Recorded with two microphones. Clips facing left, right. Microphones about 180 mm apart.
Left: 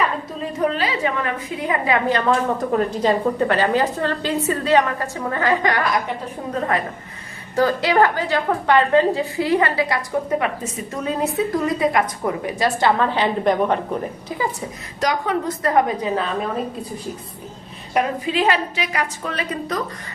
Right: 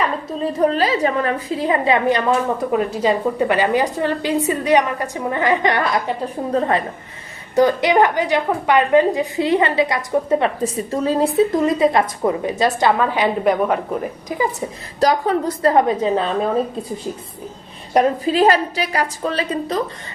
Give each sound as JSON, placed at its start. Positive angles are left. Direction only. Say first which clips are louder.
{"t": 0.4, "sound": "a woman's voice", "louder": "right 5 dB", "side_deg": -35}
{"t": 7.5, "sound": "a woman's voice", "louder": "right 3 dB", "side_deg": -20}
{"t": 15.0, "sound": "a woman's voice", "louder": "right 4 dB", "side_deg": -35}
{"t": 17.9, "sound": "a woman's voice", "louder": "right 5 dB", "side_deg": -40}